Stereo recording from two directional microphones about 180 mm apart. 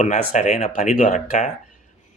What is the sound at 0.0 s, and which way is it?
Speech, 40° left (ahead or behind).